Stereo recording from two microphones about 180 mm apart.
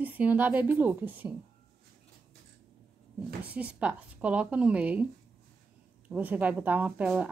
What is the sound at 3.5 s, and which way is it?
A woman's voice, 5° right (ahead or behind).